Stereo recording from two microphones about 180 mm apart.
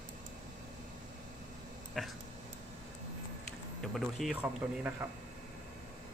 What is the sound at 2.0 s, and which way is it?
Speech, centre (ahead or behind).